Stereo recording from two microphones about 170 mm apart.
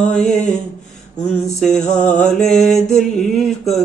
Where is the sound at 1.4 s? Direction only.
5° left (ahead or behind).